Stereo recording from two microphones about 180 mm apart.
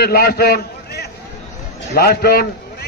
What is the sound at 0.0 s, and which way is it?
A man's voice, 55° left (ahead or behind).